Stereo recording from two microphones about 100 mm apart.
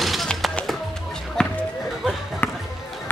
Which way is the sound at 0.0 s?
Centre (ahead or behind).